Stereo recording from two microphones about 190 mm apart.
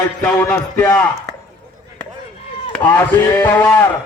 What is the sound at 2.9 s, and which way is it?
Speech, 10° left (ahead or behind).